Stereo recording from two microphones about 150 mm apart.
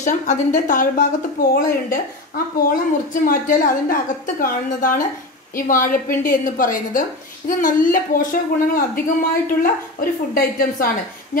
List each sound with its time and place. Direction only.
0.0 s a woman's voice: 55° left (ahead or behind)
1.5 s a woman's voice: 75° left (ahead or behind)